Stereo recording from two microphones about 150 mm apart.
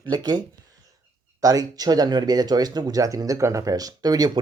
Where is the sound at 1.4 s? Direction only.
25° right (ahead or behind).